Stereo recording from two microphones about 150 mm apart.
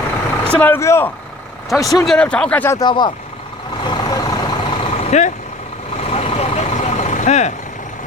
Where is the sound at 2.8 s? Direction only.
30° left (ahead or behind).